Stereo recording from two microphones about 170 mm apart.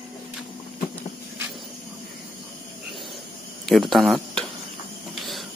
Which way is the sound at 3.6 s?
Centre (ahead or behind).